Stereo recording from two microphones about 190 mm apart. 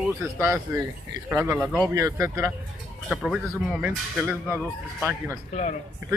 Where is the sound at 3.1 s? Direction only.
Centre (ahead or behind).